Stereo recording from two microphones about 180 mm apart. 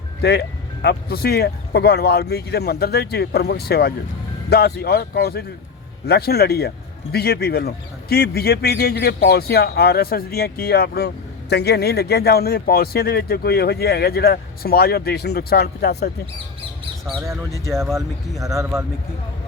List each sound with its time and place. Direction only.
0.2 s speech: 65° left (ahead or behind)
17.9 s speech: 20° right (ahead or behind)